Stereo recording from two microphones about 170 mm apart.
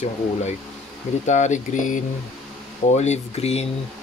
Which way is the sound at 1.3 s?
45° left (ahead or behind).